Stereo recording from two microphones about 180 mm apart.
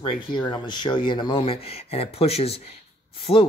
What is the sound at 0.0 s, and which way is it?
Speech, 25° left (ahead or behind).